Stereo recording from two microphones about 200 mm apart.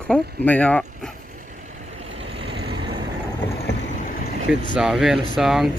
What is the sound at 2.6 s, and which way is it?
Vehicle, 25° right (ahead or behind).